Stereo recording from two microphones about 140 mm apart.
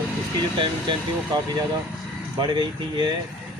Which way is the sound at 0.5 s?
35° right (ahead or behind).